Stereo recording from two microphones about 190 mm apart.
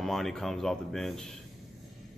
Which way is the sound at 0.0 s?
Centre (ahead or behind).